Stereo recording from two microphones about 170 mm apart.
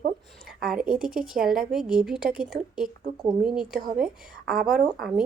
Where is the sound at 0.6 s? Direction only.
5° right (ahead or behind).